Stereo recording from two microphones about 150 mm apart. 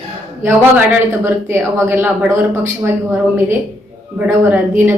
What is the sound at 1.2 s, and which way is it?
Speech, 15° right (ahead or behind).